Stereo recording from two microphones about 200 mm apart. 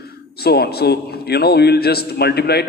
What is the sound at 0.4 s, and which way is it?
A man's voice, 50° left (ahead or behind).